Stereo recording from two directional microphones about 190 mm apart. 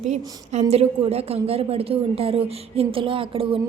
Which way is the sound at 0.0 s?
35° right (ahead or behind).